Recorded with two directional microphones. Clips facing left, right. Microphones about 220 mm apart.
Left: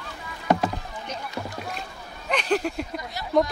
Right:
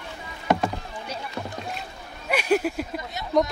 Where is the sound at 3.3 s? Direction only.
Centre (ahead or behind).